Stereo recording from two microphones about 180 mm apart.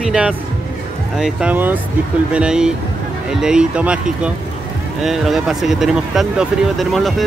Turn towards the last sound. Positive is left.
turn(degrees=0)  # may be behind; listen again after turning